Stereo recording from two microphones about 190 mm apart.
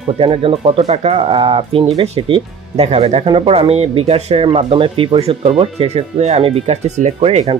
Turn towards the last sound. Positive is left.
turn(degrees=-30)  # may be behind; listen again after turning